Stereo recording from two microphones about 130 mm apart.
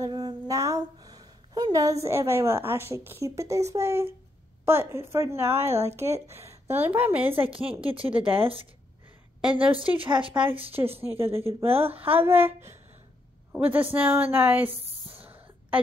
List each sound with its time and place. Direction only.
0.0 s a sound: 30° right (ahead or behind)
4.6 s a woman's voice: 20° right (ahead or behind)
5.7 s speech: 55° right (ahead or behind)
6.7 s a woman's voice: 15° right (ahead or behind)
7.3 s speech: 45° right (ahead or behind)
9.5 s speech: 45° right (ahead or behind)
12.1 s a woman's voice: 15° right (ahead or behind)
14.7 s a sound: 45° right (ahead or behind)